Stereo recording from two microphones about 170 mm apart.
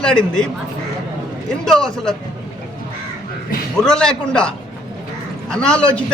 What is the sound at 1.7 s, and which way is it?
Speech, 5° left (ahead or behind).